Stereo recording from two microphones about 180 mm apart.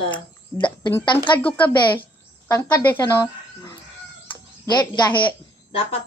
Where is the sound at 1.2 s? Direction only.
25° left (ahead or behind).